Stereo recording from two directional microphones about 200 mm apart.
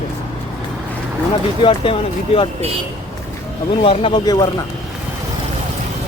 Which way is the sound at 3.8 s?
25° left (ahead or behind).